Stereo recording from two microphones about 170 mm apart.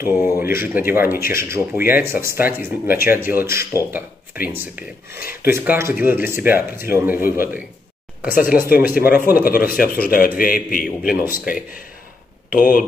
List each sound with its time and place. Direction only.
0.0 s speech: 15° right (ahead or behind)
7.2 s a man's voice: 60° left (ahead or behind)
8.5 s a man's voice: 60° left (ahead or behind)